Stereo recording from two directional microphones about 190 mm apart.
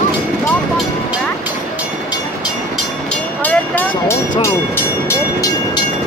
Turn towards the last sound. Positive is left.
turn(degrees=10)  # may be behind; listen again after turning